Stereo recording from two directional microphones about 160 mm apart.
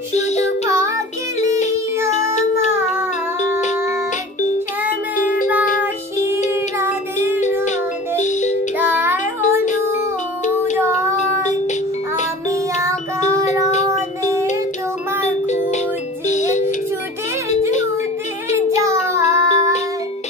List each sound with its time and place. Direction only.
0.1 s music: 45° left (ahead or behind)
0.7 s child singing: 20° right (ahead or behind)
2.0 s music: 45° left (ahead or behind)
2.7 s music: 15° right (ahead or behind)
5.1 s music: 60° left (ahead or behind)
8.2 s music: 45° left (ahead or behind)
8.7 s music: 10° right (ahead or behind)
9.2 s music: 50° left (ahead or behind)
10.8 s child singing: 15° right (ahead or behind)
11.1 s music: 45° left (ahead or behind)
15.2 s music: 45° left (ahead or behind)
18.8 s child singing: 20° right (ahead or behind)